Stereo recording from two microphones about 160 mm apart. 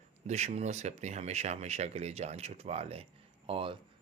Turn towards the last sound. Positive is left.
turn(degrees=-35)  # may be behind; listen again after turning